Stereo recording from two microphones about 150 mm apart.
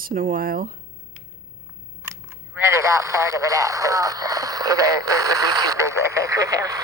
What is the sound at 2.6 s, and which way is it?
Speech, 20° right (ahead or behind).